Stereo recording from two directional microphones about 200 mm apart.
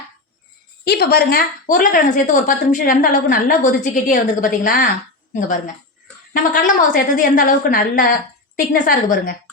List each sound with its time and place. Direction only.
0.9 s a woman's voice: 50° left (ahead or behind)